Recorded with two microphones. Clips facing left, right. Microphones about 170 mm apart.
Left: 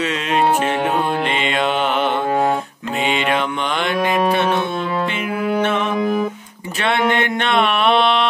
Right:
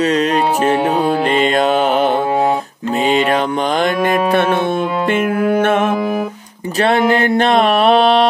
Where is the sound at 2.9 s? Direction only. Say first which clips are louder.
Right 5 dB; 40° right (ahead or behind).